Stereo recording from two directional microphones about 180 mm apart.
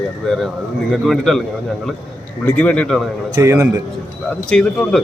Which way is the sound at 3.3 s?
15° right (ahead or behind).